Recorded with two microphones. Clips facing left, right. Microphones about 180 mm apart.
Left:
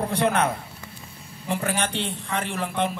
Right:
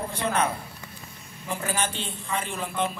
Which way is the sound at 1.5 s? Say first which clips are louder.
Left 3 dB; 65° left (ahead or behind).